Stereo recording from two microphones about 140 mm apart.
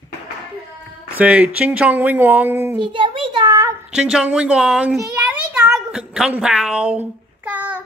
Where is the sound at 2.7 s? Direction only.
35° right (ahead or behind).